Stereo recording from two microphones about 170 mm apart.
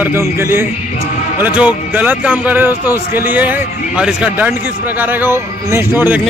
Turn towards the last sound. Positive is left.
turn(degrees=-10)  # may be behind; listen again after turning